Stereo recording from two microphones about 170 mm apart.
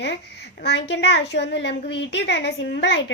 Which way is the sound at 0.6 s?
75° left (ahead or behind).